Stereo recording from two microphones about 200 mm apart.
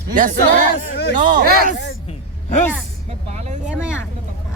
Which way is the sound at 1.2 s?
45° right (ahead or behind).